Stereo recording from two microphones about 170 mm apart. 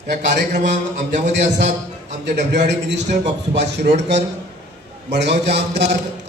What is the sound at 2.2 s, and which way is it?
A man's voice, 85° right.